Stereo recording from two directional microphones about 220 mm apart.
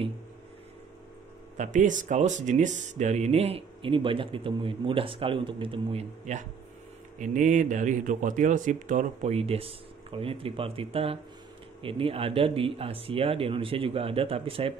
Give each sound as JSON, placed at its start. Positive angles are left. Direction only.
{"t": 1.6, "sound": "speech", "side_deg": -35}